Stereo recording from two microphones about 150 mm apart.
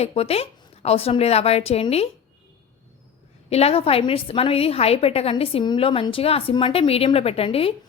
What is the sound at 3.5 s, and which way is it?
A woman's voice, 40° left (ahead or behind).